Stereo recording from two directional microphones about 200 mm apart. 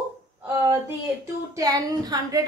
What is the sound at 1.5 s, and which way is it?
Speech, 20° right (ahead or behind).